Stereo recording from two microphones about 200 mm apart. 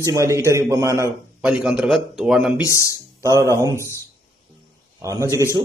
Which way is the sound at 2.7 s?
15° left (ahead or behind).